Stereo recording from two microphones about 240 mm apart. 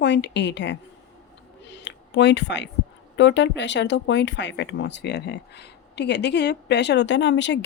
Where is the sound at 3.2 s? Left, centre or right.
Left.